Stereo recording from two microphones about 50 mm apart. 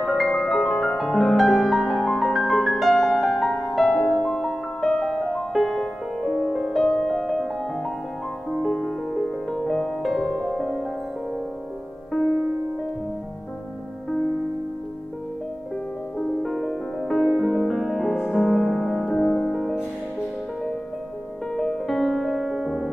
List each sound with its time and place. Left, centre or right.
0.0 s music: centre
2.9 s music: centre
4.8 s music: centre
6.2 s music: centre
6.5 s music: centre
6.8 s music: centre
7.2 s music: centre
10.0 s music: centre
16.2 s music: centre
19.1 s music: centre
21.5 s music: centre